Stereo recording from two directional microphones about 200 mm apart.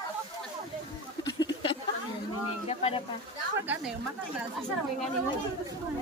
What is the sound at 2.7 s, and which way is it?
Speech, 30° left (ahead or behind).